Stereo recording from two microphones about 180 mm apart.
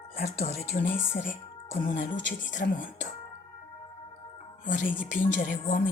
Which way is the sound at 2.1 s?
90° left.